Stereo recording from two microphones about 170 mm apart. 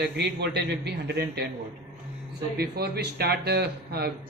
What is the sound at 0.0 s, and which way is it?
A man's voice, 80° right.